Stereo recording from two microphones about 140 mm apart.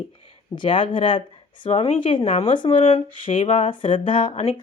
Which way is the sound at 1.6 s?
50° left (ahead or behind).